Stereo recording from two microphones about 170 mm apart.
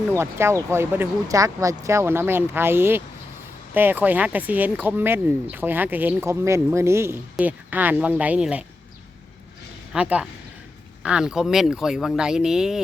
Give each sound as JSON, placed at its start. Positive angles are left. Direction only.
{"t": 0.1, "sound": "speech", "side_deg": -15}
{"t": 9.9, "sound": "speech", "side_deg": -5}